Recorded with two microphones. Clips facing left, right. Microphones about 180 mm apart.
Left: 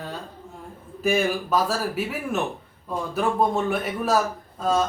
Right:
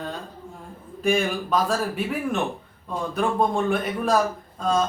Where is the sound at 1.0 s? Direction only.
5° left (ahead or behind).